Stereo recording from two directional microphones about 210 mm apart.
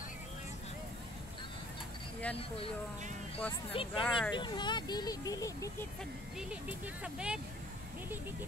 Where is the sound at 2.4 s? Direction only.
25° left (ahead or behind).